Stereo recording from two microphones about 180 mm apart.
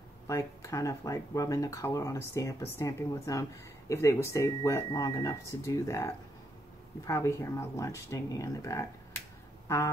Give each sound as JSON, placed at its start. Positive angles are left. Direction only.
{"t": 0.3, "sound": "speech", "side_deg": 15}